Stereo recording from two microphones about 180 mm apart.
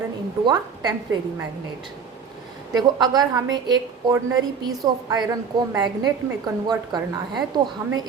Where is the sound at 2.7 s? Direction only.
20° right (ahead or behind).